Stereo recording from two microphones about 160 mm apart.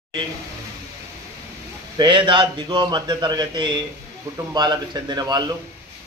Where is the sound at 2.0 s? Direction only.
30° right (ahead or behind).